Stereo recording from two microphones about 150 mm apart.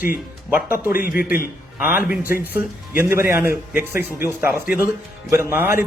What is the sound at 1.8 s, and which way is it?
A man's voice, 10° right (ahead or behind).